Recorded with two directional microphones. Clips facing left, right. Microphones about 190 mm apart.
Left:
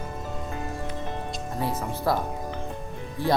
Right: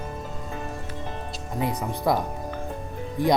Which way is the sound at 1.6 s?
15° right (ahead or behind).